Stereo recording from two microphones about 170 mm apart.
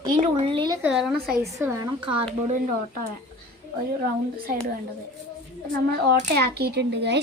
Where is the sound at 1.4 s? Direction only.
15° right (ahead or behind).